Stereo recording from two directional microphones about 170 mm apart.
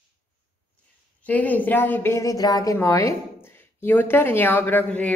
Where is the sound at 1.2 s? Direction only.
10° left (ahead or behind).